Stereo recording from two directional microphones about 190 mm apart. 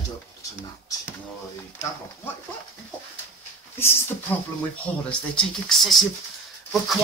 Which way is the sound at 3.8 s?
10° left (ahead or behind).